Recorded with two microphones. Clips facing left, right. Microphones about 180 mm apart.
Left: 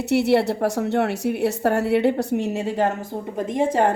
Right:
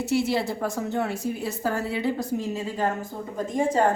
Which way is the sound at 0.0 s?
65° left (ahead or behind).